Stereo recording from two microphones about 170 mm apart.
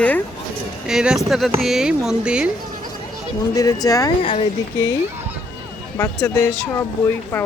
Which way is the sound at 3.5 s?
20° left (ahead or behind).